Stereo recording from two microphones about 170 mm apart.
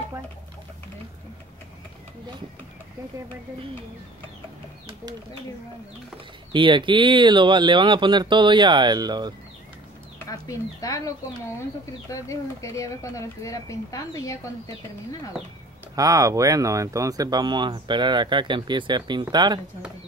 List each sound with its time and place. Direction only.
6.5 s speech: 30° right (ahead or behind)
10.2 s speech: 20° left (ahead or behind)
16.0 s speech: 20° right (ahead or behind)